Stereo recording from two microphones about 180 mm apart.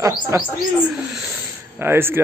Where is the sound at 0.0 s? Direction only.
15° right (ahead or behind).